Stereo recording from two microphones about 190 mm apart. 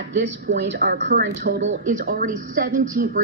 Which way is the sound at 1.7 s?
40° right (ahead or behind).